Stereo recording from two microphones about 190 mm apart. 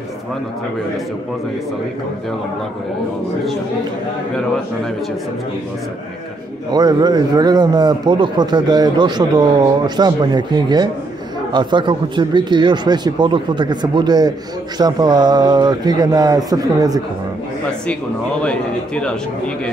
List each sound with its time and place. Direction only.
6.7 s a man's voice: 20° right (ahead or behind)
18.4 s a man's voice: 5° left (ahead or behind)